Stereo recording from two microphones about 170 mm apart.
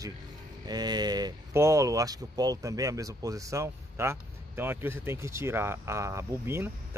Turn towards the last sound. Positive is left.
turn(degrees=-15)  # may be behind; listen again after turning